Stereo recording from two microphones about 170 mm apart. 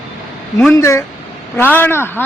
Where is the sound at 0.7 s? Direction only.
20° left (ahead or behind).